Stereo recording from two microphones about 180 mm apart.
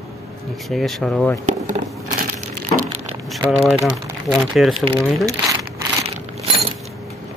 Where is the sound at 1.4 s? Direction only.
45° right (ahead or behind).